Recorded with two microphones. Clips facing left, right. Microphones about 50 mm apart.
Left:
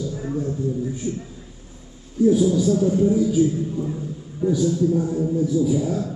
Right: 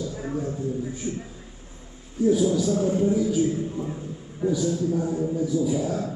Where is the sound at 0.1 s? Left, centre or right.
Centre.